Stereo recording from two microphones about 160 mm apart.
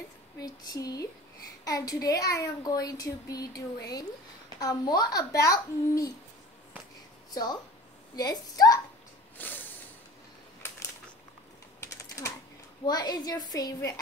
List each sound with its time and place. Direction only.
0.4 s speech: 20° left (ahead or behind)
8.2 s speech: 25° left (ahead or behind)
9.4 s a sound: 10° left (ahead or behind)
11.8 s typing: 20° left (ahead or behind)
12.8 s speech: 25° left (ahead or behind)